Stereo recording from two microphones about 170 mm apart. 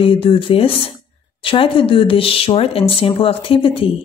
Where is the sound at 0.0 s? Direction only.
35° left (ahead or behind).